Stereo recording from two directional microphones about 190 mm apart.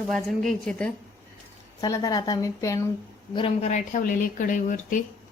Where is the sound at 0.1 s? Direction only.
Centre (ahead or behind).